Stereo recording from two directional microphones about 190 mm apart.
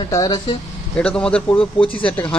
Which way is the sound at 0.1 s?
20° left (ahead or behind).